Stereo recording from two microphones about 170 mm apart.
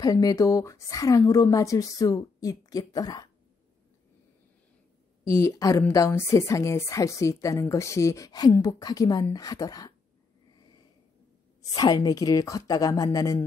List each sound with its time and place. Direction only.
0.0 s speech: 20° left (ahead or behind)
5.2 s speech: 15° left (ahead or behind)
11.7 s speech: 25° left (ahead or behind)